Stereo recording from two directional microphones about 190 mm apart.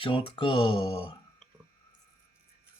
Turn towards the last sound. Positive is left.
turn(degrees=30)  # may be behind; listen again after turning